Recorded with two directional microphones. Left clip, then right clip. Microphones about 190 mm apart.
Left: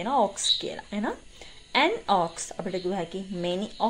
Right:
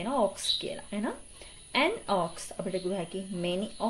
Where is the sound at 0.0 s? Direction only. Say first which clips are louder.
Left 4 dB; 10° left (ahead or behind).